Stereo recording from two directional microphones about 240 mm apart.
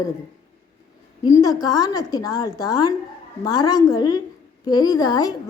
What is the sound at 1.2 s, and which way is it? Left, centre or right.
A woman's voice, centre.